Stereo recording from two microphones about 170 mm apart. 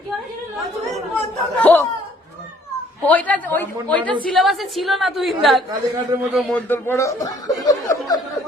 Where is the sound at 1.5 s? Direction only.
10° left (ahead or behind).